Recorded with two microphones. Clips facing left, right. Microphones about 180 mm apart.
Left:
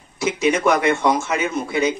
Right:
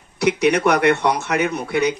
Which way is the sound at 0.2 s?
65° right (ahead or behind).